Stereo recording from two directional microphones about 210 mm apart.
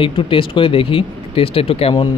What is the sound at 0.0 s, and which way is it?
Speech, 25° left (ahead or behind).